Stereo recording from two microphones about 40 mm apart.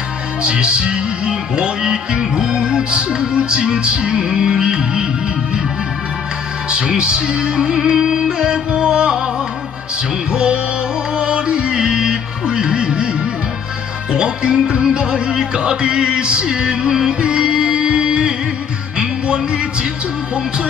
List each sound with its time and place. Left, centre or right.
0.4 s music: right
6.7 s music: right
10.3 s music: right